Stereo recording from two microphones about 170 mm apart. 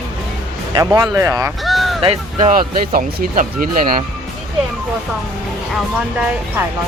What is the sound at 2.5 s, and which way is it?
Speech, 55° right (ahead or behind).